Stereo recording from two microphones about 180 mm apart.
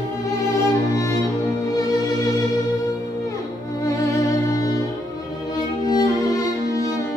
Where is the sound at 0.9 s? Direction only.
15° left (ahead or behind).